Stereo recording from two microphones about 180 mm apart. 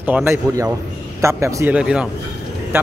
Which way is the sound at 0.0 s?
10° right (ahead or behind).